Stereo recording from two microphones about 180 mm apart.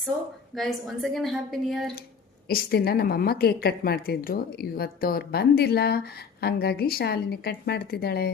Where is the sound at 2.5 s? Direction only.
60° left (ahead or behind).